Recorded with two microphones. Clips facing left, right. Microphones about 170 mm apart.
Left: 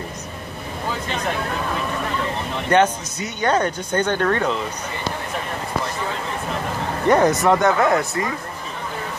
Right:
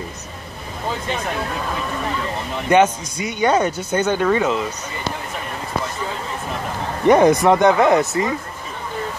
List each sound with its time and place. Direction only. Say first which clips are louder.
2.7 s speech: right 2 dB; 10° right (ahead or behind)
7.1 s speech: right 3 dB; 15° right (ahead or behind)